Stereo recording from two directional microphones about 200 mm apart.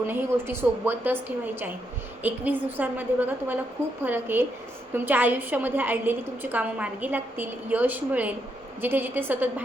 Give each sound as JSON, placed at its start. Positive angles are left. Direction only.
{"t": 0.1, "sound": "a woman's voice", "side_deg": -10}